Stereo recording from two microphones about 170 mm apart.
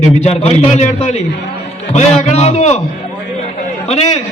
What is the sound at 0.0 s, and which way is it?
A man's voice, 40° left (ahead or behind).